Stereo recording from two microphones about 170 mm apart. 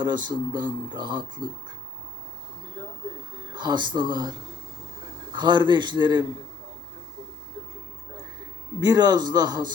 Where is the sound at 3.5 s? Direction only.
25° right (ahead or behind).